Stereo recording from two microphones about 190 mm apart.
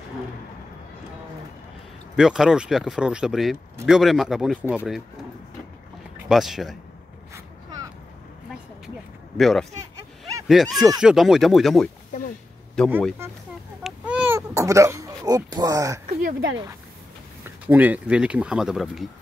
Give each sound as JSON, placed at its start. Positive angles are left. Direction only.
{"t": 2.1, "sound": "speech", "side_deg": -5}
{"t": 6.2, "sound": "speech", "side_deg": 0}
{"t": 9.4, "sound": "speech", "side_deg": 0}
{"t": 13.8, "sound": "cat", "side_deg": -5}
{"t": 16.2, "sound": "speech", "side_deg": -50}
{"t": 17.6, "sound": "speech", "side_deg": -10}